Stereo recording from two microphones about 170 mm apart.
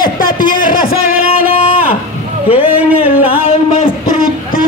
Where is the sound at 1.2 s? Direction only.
35° left (ahead or behind).